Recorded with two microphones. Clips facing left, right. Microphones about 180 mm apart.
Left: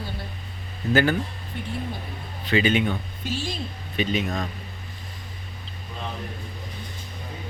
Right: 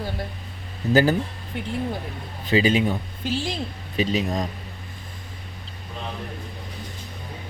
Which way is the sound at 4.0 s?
35° right (ahead or behind).